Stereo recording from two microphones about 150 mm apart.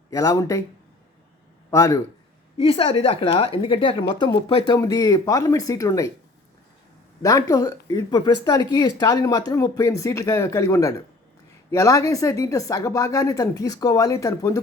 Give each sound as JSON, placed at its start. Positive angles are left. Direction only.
{"t": 0.1, "sound": "a woman's voice", "side_deg": 25}
{"t": 1.7, "sound": "a woman's voice", "side_deg": 25}
{"t": 2.6, "sound": "a woman's voice", "side_deg": 35}
{"t": 7.2, "sound": "a woman's voice", "side_deg": 20}